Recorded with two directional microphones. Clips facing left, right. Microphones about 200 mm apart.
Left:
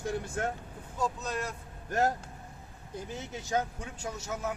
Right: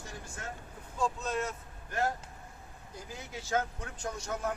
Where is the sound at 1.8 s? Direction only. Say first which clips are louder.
Left 4 dB; 45° left (ahead or behind).